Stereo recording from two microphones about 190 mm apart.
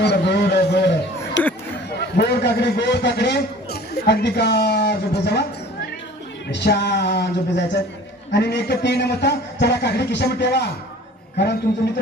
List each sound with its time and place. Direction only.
0.0 s a sound: 65° left (ahead or behind)
1.9 s a man's voice: 60° left (ahead or behind)
6.5 s a man's voice: 65° left (ahead or behind)